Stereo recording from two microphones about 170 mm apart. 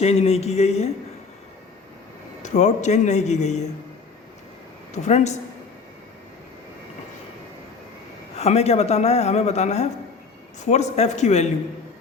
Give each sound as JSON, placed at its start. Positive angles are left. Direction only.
{"t": 0.0, "sound": "speech", "side_deg": 40}
{"t": 2.4, "sound": "a man's voice", "side_deg": 45}
{"t": 5.0, "sound": "speech", "side_deg": 40}
{"t": 8.4, "sound": "speech", "side_deg": 40}